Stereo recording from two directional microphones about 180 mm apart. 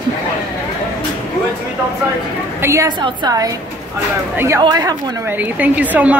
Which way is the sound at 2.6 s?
15° right (ahead or behind).